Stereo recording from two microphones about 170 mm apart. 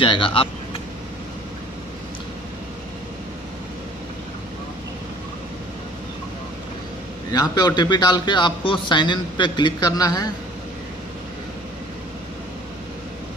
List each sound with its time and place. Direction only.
0.0 s speech: 30° left (ahead or behind)
7.2 s a man's voice: 20° left (ahead or behind)